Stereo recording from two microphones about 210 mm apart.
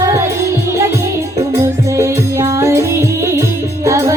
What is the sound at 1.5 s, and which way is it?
Music, 15° right (ahead or behind).